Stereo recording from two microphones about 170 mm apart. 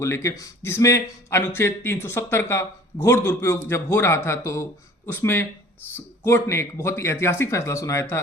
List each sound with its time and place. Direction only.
0.0 s a man's voice: 15° left (ahead or behind)